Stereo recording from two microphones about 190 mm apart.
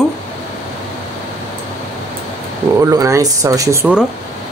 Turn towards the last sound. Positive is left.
turn(degrees=-15)  # may be behind; listen again after turning